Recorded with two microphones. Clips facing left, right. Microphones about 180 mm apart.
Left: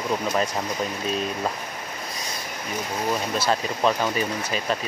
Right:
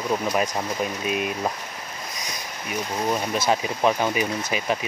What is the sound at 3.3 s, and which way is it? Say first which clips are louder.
Speech: right 1 dB; 15° right (ahead or behind).